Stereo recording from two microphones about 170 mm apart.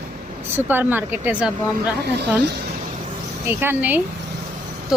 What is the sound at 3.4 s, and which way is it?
Speech, 15° right (ahead or behind).